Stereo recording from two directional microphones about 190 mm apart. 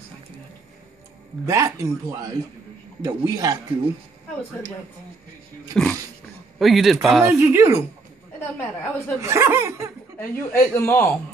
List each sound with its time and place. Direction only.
1.4 s speech: 15° right (ahead or behind)
5.7 s speech: 5° left (ahead or behind)
7.2 s speech: 10° right (ahead or behind)
9.2 s speech: 15° right (ahead or behind)
10.1 s a man's voice: 10° left (ahead or behind)